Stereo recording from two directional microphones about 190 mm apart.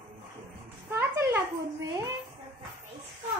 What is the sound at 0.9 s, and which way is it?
Speech, 10° right (ahead or behind).